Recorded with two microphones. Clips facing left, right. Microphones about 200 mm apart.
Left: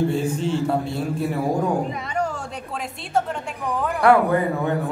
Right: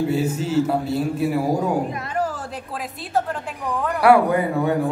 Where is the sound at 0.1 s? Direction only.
5° right (ahead or behind).